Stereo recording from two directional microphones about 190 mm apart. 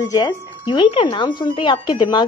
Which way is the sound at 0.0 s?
20° left (ahead or behind).